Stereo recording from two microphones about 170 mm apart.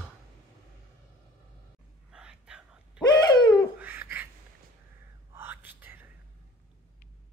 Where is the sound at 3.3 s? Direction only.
20° left (ahead or behind).